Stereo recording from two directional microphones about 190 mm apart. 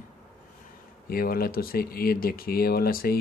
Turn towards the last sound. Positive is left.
turn(degrees=50)  # may be behind; listen again after turning